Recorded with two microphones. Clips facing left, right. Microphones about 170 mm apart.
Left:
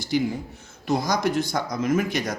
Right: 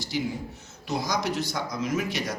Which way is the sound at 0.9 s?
50° left (ahead or behind).